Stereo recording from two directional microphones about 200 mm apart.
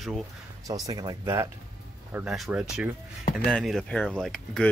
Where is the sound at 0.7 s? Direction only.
15° right (ahead or behind).